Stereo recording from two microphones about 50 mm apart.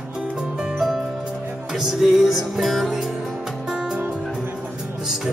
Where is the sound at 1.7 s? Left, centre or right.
Centre.